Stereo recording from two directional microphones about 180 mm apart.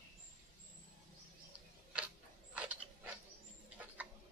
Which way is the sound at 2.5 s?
5° right (ahead or behind).